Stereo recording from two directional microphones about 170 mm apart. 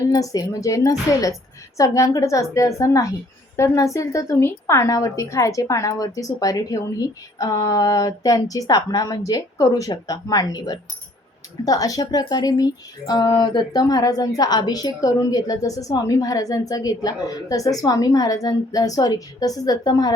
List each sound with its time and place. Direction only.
0.0 s a woman's voice: 20° left (ahead or behind)